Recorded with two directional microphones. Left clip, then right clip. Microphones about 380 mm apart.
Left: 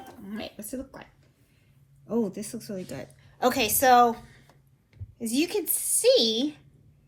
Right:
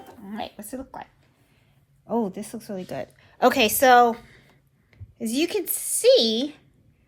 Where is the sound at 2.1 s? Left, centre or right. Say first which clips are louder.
Right 3 dB; right.